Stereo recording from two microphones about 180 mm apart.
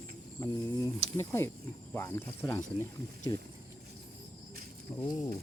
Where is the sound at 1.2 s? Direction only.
15° left (ahead or behind).